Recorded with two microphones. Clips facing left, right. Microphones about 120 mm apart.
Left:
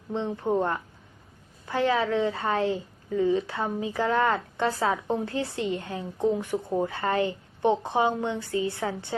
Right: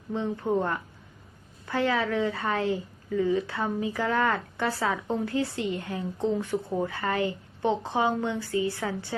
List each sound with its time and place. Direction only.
0.1 s a woman's voice: 20° left (ahead or behind)